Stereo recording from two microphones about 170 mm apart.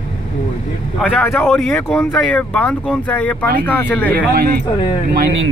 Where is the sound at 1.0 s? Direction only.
5° left (ahead or behind).